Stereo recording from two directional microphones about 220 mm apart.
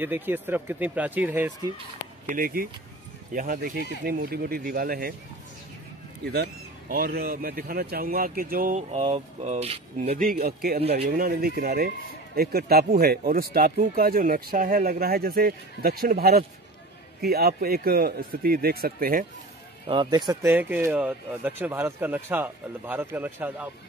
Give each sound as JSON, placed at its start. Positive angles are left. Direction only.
{"t": 0.0, "sound": "speech", "side_deg": -10}
{"t": 2.2, "sound": "speech", "side_deg": -40}
{"t": 6.2, "sound": "speech", "side_deg": -45}
{"t": 10.2, "sound": "speech", "side_deg": -40}
{"t": 19.9, "sound": "speech", "side_deg": -20}